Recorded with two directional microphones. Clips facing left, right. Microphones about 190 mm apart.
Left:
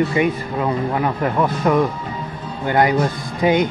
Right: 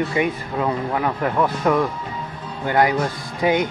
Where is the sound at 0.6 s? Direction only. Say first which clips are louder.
Left 2 dB; 10° left (ahead or behind).